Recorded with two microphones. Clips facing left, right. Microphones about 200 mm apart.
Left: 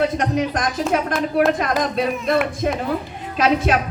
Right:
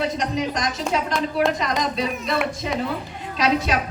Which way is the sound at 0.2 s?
55° left (ahead or behind).